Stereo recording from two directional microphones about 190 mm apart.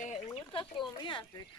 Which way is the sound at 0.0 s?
40° left (ahead or behind).